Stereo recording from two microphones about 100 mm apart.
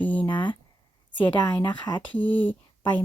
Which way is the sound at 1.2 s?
15° left (ahead or behind).